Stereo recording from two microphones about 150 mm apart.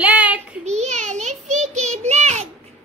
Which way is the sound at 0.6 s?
50° right (ahead or behind).